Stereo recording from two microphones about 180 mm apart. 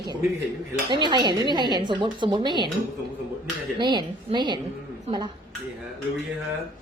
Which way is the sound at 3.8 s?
25° right (ahead or behind).